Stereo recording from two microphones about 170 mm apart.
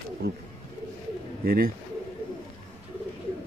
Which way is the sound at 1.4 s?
60° right (ahead or behind).